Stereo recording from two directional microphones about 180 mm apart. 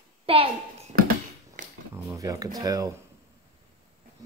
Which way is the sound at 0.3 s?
30° right (ahead or behind).